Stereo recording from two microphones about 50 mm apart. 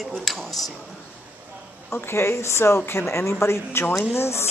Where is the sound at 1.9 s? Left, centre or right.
Left.